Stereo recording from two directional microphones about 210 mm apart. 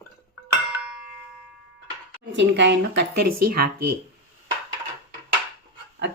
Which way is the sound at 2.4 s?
55° right (ahead or behind).